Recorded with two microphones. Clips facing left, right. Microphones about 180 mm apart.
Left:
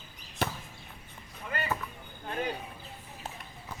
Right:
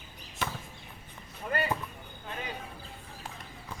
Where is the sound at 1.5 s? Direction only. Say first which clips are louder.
Right 4 dB; 40° right (ahead or behind).